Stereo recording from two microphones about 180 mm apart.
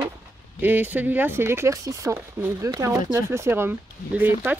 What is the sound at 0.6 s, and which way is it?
Speech, 10° right (ahead or behind).